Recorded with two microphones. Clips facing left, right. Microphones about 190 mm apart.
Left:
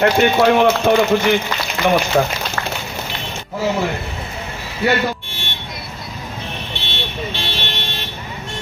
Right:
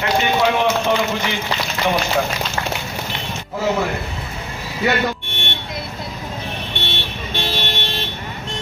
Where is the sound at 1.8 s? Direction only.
55° left (ahead or behind).